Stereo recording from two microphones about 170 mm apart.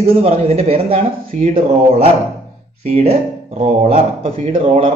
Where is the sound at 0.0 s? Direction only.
35° right (ahead or behind).